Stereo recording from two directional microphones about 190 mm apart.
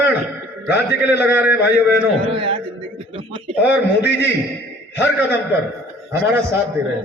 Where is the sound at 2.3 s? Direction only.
30° right (ahead or behind).